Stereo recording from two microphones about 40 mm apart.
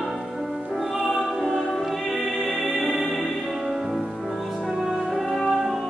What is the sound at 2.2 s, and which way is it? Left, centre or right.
Music, centre.